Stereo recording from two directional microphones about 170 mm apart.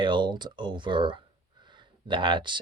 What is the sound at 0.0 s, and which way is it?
Speech, 30° right (ahead or behind).